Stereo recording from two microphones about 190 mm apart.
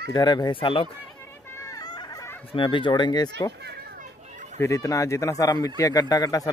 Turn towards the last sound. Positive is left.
turn(degrees=20)  # may be behind; listen again after turning